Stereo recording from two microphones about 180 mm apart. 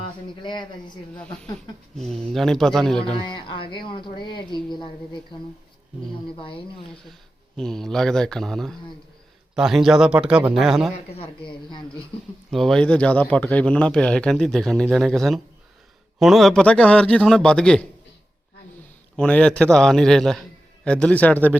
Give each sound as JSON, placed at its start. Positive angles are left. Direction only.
{"t": 0.3, "sound": "speech", "side_deg": 25}
{"t": 2.0, "sound": "speech", "side_deg": 5}
{"t": 3.2, "sound": "speech", "side_deg": 25}
{"t": 6.3, "sound": "speech", "side_deg": 30}
{"t": 6.9, "sound": "speech", "side_deg": 5}
{"t": 11.1, "sound": "speech", "side_deg": 30}
{"t": 12.5, "sound": "speech", "side_deg": 0}
{"t": 19.1, "sound": "speech", "side_deg": 5}